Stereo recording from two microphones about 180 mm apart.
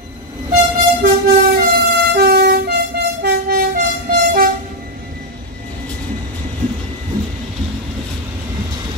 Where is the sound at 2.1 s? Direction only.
60° right (ahead or behind).